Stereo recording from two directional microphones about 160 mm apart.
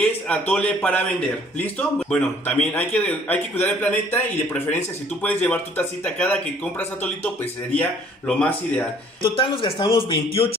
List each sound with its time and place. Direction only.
0.0 s a man's voice: 10° left (ahead or behind)
8.3 s a man's voice: 10° left (ahead or behind)
9.2 s a man's voice: 30° left (ahead or behind)